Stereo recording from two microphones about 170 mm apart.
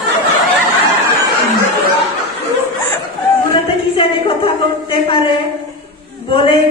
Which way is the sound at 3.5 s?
30° left (ahead or behind).